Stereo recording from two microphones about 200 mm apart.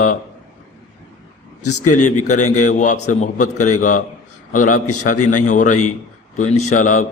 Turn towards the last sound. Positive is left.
turn(degrees=40)  # may be behind; listen again after turning